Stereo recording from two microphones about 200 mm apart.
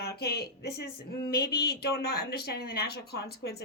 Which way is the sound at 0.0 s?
50° left (ahead or behind).